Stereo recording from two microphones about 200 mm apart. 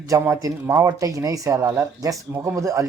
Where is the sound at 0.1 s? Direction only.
15° right (ahead or behind).